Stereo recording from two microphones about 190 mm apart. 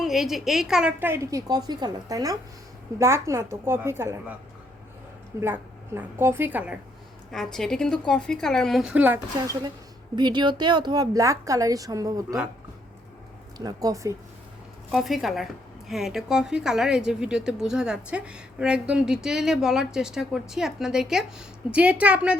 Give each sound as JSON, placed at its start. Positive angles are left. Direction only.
{"t": 0.0, "sound": "a woman's voice", "side_deg": 0}
{"t": 5.4, "sound": "a woman's voice", "side_deg": -10}
{"t": 7.3, "sound": "a woman's voice", "side_deg": 0}
{"t": 13.6, "sound": "a woman's voice", "side_deg": -20}
{"t": 14.8, "sound": "a woman's voice", "side_deg": 0}